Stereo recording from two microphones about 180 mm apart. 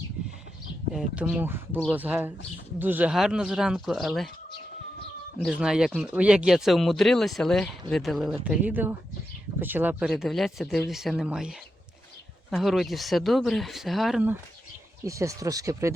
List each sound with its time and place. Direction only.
0.9 s speech: 5° right (ahead or behind)
5.4 s speech: 5° right (ahead or behind)
10.1 s speech: centre (ahead or behind)
15.0 s speech: 15° right (ahead or behind)